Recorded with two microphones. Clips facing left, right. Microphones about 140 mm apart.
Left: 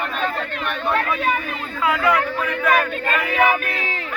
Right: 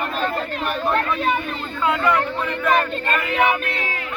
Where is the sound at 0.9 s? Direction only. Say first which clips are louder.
Even; centre (ahead or behind).